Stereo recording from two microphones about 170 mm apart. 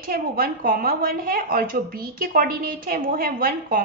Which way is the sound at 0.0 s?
60° right (ahead or behind).